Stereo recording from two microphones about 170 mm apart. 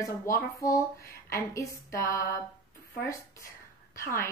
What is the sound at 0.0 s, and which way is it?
Speech, 20° left (ahead or behind).